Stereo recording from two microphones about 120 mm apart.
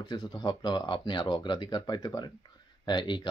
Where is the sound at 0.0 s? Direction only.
35° left (ahead or behind).